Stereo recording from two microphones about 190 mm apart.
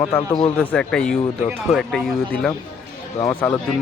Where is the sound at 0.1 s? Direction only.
25° left (ahead or behind).